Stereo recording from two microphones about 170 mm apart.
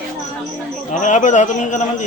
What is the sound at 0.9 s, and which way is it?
A man's voice, 45° left (ahead or behind).